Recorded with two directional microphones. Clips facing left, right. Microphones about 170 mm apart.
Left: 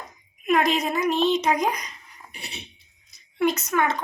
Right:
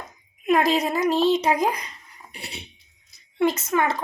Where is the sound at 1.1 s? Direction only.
10° right (ahead or behind).